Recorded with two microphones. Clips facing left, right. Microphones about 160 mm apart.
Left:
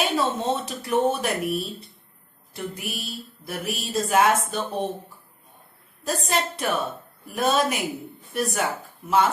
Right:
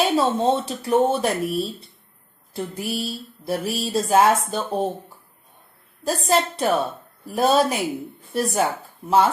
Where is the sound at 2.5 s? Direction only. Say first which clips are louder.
Right 5 dB; 30° right (ahead or behind).